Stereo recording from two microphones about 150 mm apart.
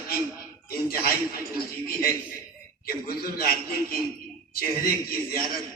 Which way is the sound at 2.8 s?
90° left.